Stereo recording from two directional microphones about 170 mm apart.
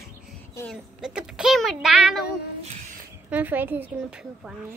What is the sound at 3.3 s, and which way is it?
Speech, 10° right (ahead or behind).